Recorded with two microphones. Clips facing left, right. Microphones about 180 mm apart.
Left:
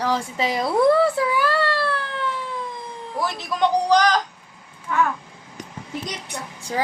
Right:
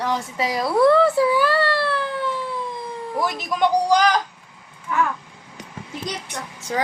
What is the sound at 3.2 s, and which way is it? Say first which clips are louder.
Speech: even; 15° right (ahead or behind).